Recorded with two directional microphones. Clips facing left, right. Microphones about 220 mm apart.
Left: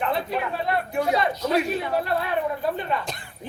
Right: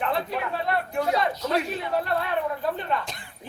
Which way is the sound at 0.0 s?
Centre (ahead or behind).